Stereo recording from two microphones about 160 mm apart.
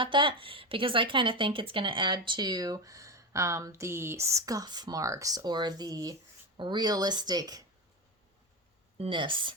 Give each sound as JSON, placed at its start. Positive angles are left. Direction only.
{"t": 0.0, "sound": "speech", "side_deg": -30}
{"t": 9.0, "sound": "speech", "side_deg": -30}